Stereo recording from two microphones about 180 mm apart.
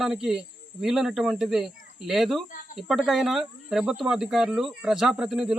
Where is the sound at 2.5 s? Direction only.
50° left (ahead or behind).